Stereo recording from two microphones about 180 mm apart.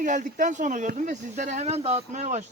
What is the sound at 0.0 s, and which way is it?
Speech, 45° right (ahead or behind).